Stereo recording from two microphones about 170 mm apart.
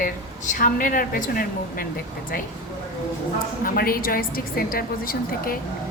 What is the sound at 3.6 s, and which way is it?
A woman's voice, 60° left (ahead or behind).